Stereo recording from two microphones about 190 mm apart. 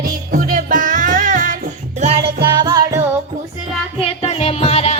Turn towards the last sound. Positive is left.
turn(degrees=30)  # may be behind; listen again after turning